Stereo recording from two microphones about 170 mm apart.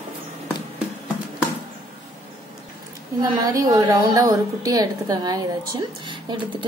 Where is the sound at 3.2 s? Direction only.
20° right (ahead or behind).